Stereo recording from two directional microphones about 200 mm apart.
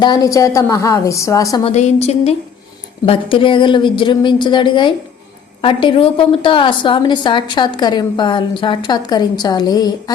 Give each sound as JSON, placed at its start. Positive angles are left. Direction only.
{"t": 0.0, "sound": "a woman's voice", "side_deg": 20}
{"t": 1.6, "sound": "a woman's voice", "side_deg": 30}